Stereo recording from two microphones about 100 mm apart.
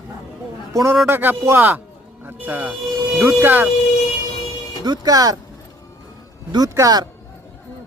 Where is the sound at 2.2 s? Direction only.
15° right (ahead or behind).